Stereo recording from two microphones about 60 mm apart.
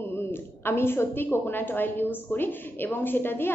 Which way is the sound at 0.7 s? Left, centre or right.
Left.